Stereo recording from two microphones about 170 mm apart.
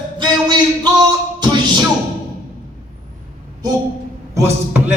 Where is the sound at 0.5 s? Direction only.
25° right (ahead or behind).